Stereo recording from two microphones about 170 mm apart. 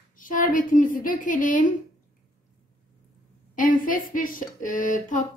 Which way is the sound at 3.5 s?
55° left (ahead or behind).